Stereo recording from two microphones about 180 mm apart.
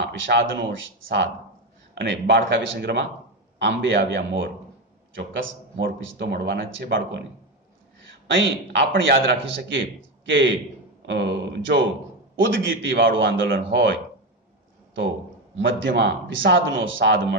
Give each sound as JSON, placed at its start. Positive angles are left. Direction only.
{"t": 0.1, "sound": "speech", "side_deg": -85}
{"t": 2.0, "sound": "speech", "side_deg": -90}
{"t": 8.3, "sound": "speech", "side_deg": -85}
{"t": 11.0, "sound": "speech", "side_deg": -75}
{"t": 15.5, "sound": "speech", "side_deg": -90}